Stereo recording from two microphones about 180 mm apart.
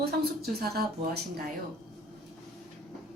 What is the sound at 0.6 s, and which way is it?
Speech, 60° right (ahead or behind).